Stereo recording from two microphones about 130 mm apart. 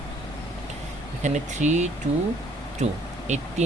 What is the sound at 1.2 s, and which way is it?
Speech, 65° right (ahead or behind).